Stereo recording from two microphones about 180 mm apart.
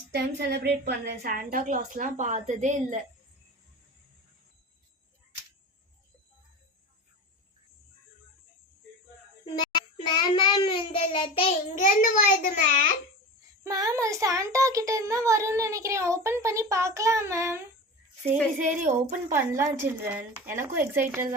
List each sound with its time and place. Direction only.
0.1 s a woman's voice: 65° right (ahead or behind); by 3.0 s 40° right (ahead or behind)
9.6 s child singing: 25° left (ahead or behind)
11.7 s a child's voice: 45° left (ahead or behind)
13.7 s speech: 20° right (ahead or behind)
18.7 s a woman's voice: 45° right (ahead or behind)
19.3 s speech: 15° right (ahead or behind)